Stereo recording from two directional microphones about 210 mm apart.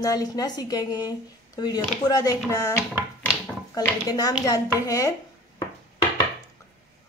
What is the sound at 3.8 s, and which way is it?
A woman's voice, 15° left (ahead or behind).